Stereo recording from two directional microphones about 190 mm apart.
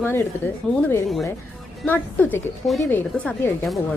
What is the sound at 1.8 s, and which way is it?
A woman's voice, 10° left (ahead or behind).